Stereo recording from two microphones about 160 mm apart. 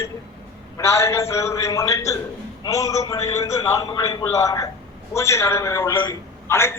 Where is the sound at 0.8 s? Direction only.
15° left (ahead or behind).